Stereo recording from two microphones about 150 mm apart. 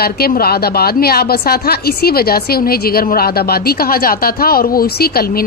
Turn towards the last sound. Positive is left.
turn(degrees=90)